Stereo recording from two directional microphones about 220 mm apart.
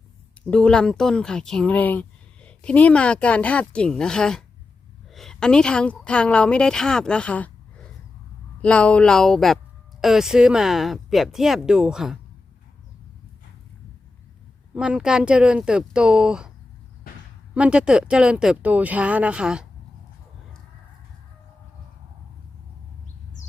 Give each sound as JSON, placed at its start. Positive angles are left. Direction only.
{"t": 0.4, "sound": "a woman's voice", "side_deg": 5}
{"t": 14.7, "sound": "speech", "side_deg": -5}
{"t": 17.5, "sound": "speech", "side_deg": -5}